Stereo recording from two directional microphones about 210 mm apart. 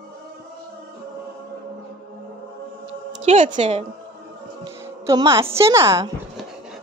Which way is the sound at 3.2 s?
35° right (ahead or behind).